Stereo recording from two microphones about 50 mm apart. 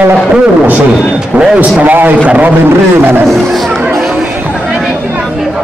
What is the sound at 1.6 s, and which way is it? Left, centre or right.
Speech, right.